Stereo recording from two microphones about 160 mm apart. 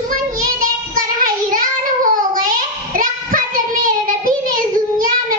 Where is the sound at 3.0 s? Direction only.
60° right (ahead or behind).